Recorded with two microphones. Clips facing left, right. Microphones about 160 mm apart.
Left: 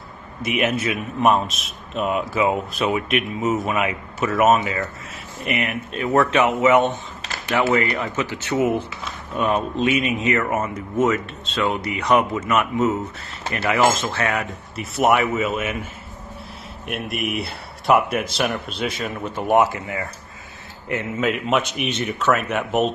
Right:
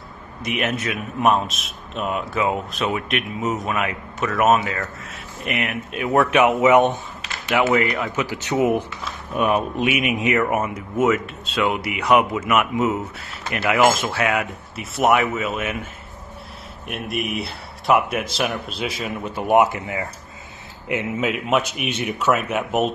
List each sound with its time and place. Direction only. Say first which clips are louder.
0.4 s a man's voice: left 3 dB; centre (ahead or behind); by 7.0 s 15° right (ahead or behind)
7.4 s a man's voice: right 1 dB; 5° right (ahead or behind)
8.2 s a man's voice: right 1 dB; 15° right (ahead or behind)
16.8 s a man's voice: even; centre (ahead or behind); by 20.1 s 20° right (ahead or behind)
21.2 s a man's voice: left 1 dB; centre (ahead or behind)